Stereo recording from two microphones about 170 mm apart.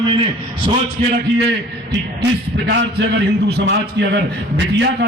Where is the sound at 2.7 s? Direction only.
90° right.